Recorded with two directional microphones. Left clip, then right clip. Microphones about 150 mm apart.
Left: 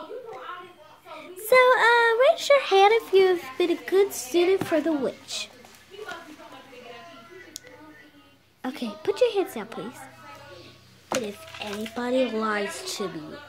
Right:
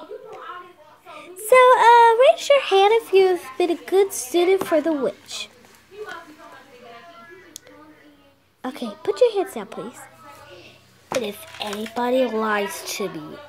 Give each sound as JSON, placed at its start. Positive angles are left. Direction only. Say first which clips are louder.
{"t": 1.4, "sound": "speech", "louder": "right 5 dB", "side_deg": -10}
{"t": 5.0, "sound": "a woman's voice", "louder": "right 4 dB", "side_deg": 5}
{"t": 8.6, "sound": "a woman's voice", "louder": "right 3 dB", "side_deg": 0}
{"t": 11.1, "sound": "speech", "louder": "right 6 dB", "side_deg": -10}